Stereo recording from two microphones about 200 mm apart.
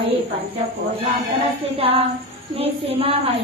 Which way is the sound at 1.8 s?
30° right (ahead or behind).